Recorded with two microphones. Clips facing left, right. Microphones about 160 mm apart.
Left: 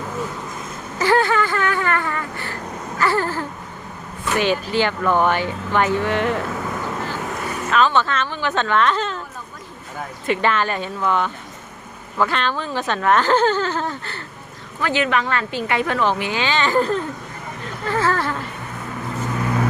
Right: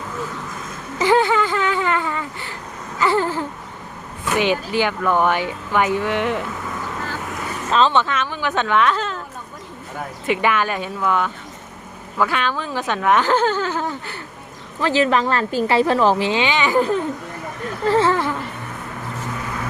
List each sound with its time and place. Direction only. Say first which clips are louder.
0.9 s a sound: right 1 dB; 15° right (ahead or behind)
4.3 s speech: even; 15° right (ahead or behind)
7.7 s speech: right 1 dB; 30° right (ahead or behind)
8.0 s speech: even; 10° right (ahead or behind)
10.2 s speech: even; 10° right (ahead or behind)
14.8 s a woman's voice: right 3 dB; 30° right (ahead or behind); by 17.0 s 15° right (ahead or behind)
17.8 s speech: right 4 dB; 25° right (ahead or behind)